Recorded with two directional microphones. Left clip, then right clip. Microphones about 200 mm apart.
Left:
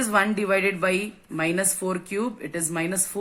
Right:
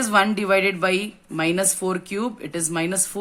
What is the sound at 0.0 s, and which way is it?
A woman's voice, 45° right (ahead or behind).